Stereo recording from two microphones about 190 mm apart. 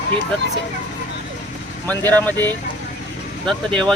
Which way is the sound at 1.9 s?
10° left (ahead or behind).